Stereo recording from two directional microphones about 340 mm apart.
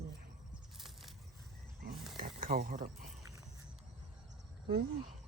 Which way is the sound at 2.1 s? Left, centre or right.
Right.